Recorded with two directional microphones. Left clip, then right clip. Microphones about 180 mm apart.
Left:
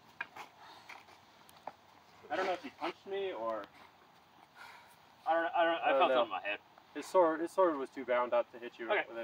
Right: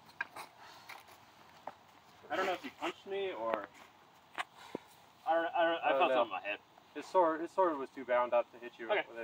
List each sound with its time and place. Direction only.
0.2 s a sound: 5° right (ahead or behind)
2.2 s speech: 5° right (ahead or behind)
2.8 s speech: 15° right (ahead or behind)
5.2 s speech: 10° right (ahead or behind)
7.0 s speech: 65° left (ahead or behind)